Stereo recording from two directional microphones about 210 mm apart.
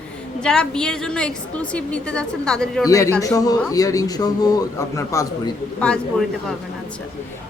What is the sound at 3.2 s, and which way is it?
A man's voice, 15° left (ahead or behind).